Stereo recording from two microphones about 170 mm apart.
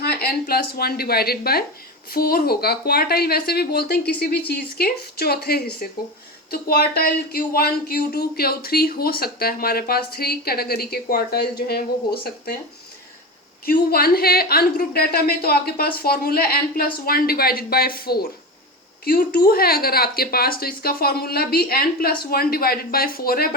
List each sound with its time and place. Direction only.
0.0 s speech: 65° left (ahead or behind)
13.7 s speech: 65° left (ahead or behind)